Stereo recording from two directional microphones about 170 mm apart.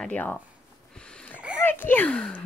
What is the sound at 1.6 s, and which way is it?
Speech, 10° left (ahead or behind).